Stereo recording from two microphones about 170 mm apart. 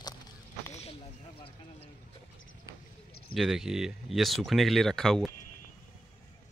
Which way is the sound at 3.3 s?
Centre (ahead or behind).